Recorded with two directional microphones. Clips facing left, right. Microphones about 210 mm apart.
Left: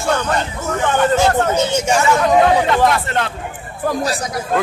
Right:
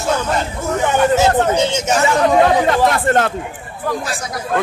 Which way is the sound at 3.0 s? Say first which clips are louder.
Right 6 dB; 45° right (ahead or behind).